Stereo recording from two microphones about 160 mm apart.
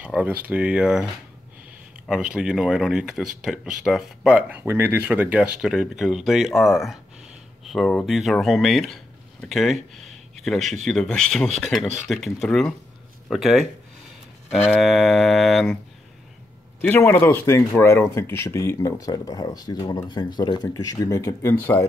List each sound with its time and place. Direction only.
0.0 s speech: 10° right (ahead or behind)
2.0 s speech: 5° right (ahead or behind)
16.8 s speech: 15° left (ahead or behind)